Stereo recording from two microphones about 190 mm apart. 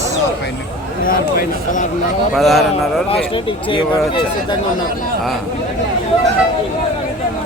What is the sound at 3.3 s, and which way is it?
Speech, 25° left (ahead or behind).